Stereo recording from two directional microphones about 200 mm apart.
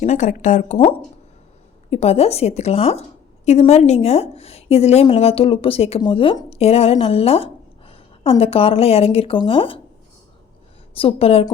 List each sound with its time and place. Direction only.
0.0 s a woman's voice: 35° left (ahead or behind)
10.9 s a woman's voice: 30° left (ahead or behind)